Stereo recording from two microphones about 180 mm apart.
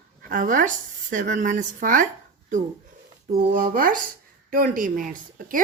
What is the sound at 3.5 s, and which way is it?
Speech, 50° right (ahead or behind).